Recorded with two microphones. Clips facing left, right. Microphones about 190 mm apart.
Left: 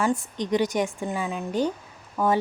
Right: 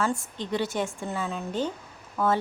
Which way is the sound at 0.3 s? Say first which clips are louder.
Left 6 dB; 15° left (ahead or behind).